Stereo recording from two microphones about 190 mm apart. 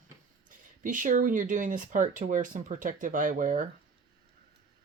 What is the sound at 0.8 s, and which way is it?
Speech, 45° right (ahead or behind).